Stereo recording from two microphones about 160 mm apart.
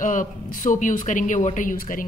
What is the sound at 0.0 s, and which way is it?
A woman's voice, 55° left (ahead or behind).